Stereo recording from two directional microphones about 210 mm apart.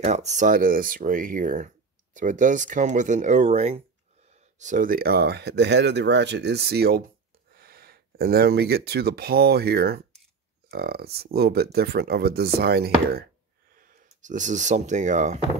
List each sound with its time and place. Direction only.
0.0 s speech: 35° right (ahead or behind)